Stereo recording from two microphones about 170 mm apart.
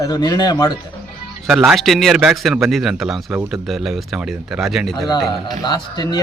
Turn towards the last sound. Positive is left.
turn(degrees=25)  # may be behind; listen again after turning